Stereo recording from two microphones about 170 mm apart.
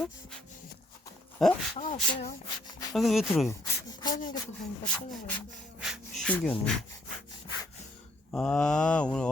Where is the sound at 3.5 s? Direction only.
20° left (ahead or behind).